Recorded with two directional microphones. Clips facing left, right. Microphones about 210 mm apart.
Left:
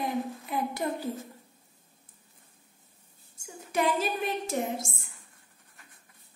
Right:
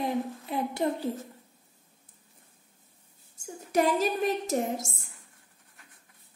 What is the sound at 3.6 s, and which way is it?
A woman's voice, 40° right (ahead or behind).